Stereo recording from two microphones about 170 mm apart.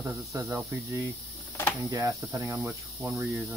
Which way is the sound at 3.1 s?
15° right (ahead or behind).